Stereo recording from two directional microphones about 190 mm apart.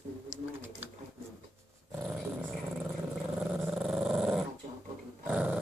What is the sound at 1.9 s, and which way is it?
Dog, 5° right (ahead or behind).